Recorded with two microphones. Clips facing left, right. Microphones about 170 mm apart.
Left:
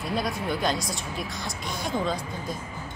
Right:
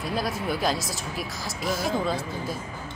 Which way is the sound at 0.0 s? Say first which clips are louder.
Even; centre (ahead or behind).